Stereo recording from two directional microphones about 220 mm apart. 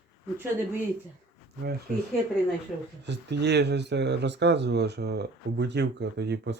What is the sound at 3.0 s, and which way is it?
Speech, 50° right (ahead or behind).